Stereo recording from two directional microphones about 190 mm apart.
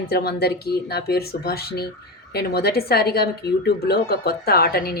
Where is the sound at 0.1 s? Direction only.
55° left (ahead or behind).